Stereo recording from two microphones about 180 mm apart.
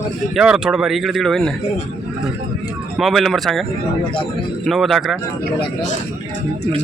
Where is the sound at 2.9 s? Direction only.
Centre (ahead or behind).